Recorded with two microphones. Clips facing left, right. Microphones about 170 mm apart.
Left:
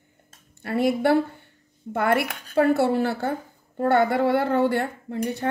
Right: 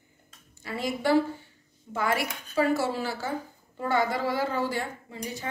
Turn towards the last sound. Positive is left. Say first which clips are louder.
# left 9 dB
turn(degrees=60)  # may be behind; listen again after turning